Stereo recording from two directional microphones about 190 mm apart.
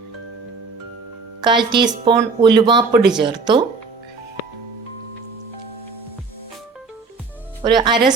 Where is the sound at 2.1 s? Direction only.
25° right (ahead or behind).